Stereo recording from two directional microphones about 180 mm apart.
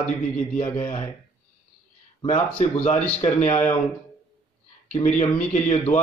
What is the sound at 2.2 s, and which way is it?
Speech, 35° left (ahead or behind).